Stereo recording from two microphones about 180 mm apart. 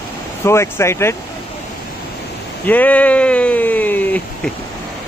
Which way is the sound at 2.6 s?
10° left (ahead or behind).